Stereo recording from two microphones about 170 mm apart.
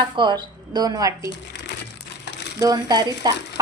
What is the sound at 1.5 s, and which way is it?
Crumpling, 85° left.